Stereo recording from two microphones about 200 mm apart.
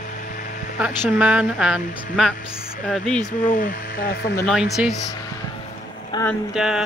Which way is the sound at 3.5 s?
45° left (ahead or behind).